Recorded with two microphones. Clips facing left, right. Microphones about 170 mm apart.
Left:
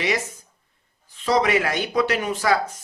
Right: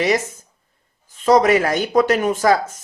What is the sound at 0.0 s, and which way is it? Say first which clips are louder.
Speech: right 6 dB; 45° right (ahead or behind).